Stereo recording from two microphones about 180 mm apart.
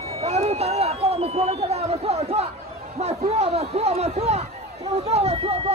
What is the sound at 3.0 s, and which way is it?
Speech, 35° right (ahead or behind).